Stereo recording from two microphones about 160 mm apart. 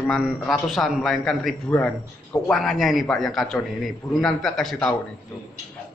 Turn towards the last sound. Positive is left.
turn(degrees=0)  # may be behind; listen again after turning